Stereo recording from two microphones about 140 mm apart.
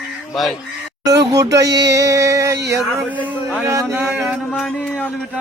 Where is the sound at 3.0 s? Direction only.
10° right (ahead or behind).